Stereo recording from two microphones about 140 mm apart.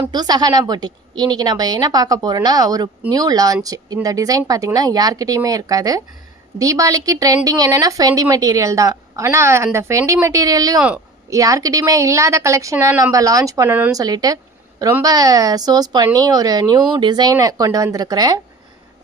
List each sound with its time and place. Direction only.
0.1 s speech: 30° right (ahead or behind)
10.8 s speech: 10° right (ahead or behind)
11.3 s speech: 25° right (ahead or behind)